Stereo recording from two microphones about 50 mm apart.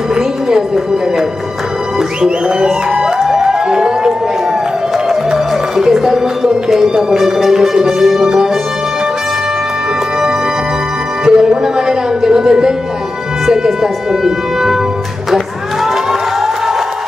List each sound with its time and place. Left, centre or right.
0.1 s music: centre
2.2 s music: centre
4.9 s speech: centre
11.2 s music: centre